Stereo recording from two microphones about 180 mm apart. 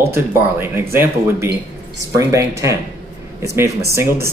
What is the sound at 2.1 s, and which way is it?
Speech, 15° right (ahead or behind).